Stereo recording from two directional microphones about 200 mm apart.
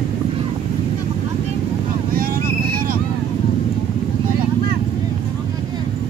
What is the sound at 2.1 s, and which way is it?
Vehicle, 45° right (ahead or behind).